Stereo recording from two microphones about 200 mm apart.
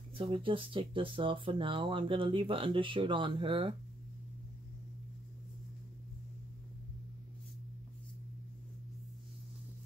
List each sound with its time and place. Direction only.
0.1 s speech: 25° right (ahead or behind)